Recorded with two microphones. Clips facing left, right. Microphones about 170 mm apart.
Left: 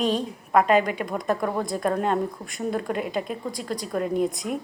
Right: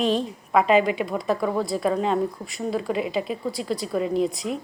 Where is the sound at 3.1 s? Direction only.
50° left (ahead or behind).